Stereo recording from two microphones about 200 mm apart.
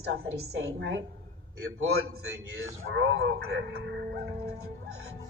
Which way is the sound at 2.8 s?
70° right (ahead or behind).